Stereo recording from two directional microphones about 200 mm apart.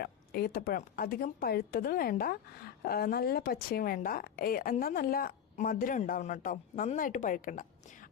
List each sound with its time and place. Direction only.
0.0 s a woman's voice: 50° left (ahead or behind)